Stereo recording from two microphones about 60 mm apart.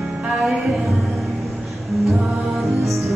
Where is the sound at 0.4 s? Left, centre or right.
Centre.